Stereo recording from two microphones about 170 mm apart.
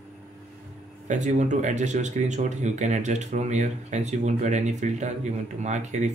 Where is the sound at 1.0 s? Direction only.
45° right (ahead or behind).